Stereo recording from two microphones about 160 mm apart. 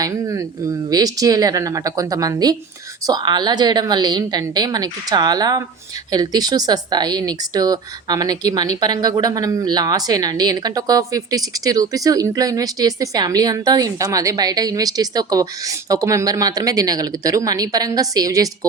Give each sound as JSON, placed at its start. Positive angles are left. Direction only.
{"t": 0.0, "sound": "a woman's voice", "side_deg": -20}